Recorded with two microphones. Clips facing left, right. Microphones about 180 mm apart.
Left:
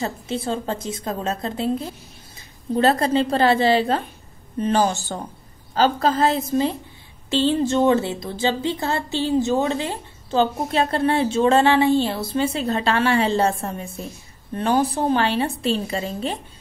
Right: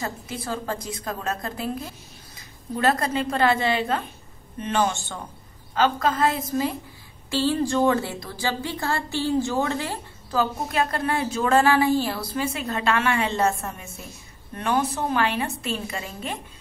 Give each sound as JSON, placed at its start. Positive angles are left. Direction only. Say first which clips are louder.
{"t": 0.0, "sound": "a woman's voice", "louder": "left 6 dB", "side_deg": 25}